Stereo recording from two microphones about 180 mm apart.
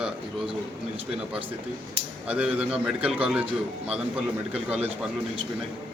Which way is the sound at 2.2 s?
5° right (ahead or behind).